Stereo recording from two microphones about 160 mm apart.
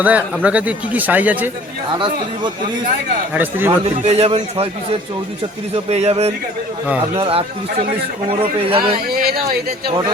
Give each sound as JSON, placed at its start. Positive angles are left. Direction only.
{"t": 0.0, "sound": "speech", "side_deg": -10}
{"t": 3.3, "sound": "speech", "side_deg": -10}
{"t": 4.0, "sound": "a man's voice", "side_deg": -40}
{"t": 5.7, "sound": "a man's voice", "side_deg": -40}
{"t": 9.1, "sound": "speech", "side_deg": -70}